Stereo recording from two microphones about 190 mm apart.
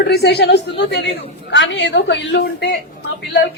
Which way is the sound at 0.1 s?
60° left (ahead or behind).